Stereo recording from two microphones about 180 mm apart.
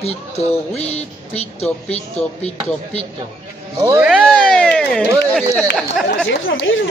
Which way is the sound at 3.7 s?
20° right (ahead or behind).